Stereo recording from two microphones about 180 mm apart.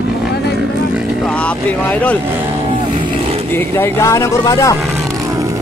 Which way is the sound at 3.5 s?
15° left (ahead or behind).